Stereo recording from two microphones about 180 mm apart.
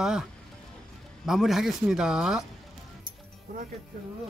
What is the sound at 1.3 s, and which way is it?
Speech, centre (ahead or behind).